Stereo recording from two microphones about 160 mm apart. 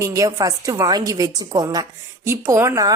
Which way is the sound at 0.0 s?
20° right (ahead or behind).